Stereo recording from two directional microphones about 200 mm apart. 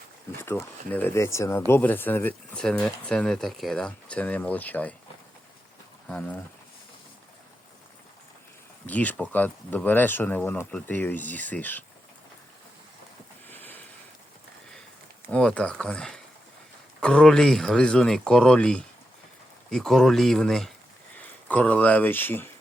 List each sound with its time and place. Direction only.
0.4 s speech: 10° left (ahead or behind)
6.1 s speech: 5° left (ahead or behind)
8.9 s speech: 5° left (ahead or behind)
13.5 s a sound: 10° left (ahead or behind)
15.3 s speech: 5° left (ahead or behind)